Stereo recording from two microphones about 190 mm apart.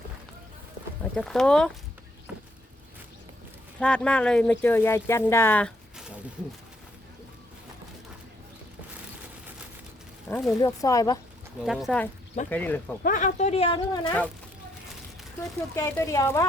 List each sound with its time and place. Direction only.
1.0 s speech: 5° left (ahead or behind)
2.3 s a sound: 5° right (ahead or behind)
3.8 s speech: 5° left (ahead or behind)
10.3 s speech: 15° left (ahead or behind)
11.6 s speech: centre (ahead or behind)
13.0 s speech: 45° left (ahead or behind); by 14.1 s 25° left (ahead or behind)
15.7 s speech: 15° left (ahead or behind)